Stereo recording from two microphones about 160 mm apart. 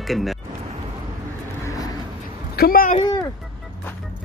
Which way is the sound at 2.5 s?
70° left (ahead or behind).